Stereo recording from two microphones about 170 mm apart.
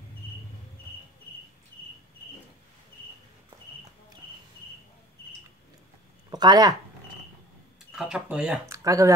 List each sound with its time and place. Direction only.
6.3 s speech: 25° right (ahead or behind)
7.9 s speech: 5° right (ahead or behind)
8.6 s speech: 20° right (ahead or behind)